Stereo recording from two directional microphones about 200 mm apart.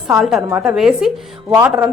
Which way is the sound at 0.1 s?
Centre (ahead or behind).